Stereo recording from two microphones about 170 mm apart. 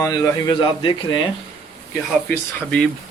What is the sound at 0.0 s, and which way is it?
Speech, 20° left (ahead or behind).